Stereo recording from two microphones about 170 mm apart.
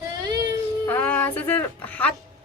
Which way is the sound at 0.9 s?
10° left (ahead or behind).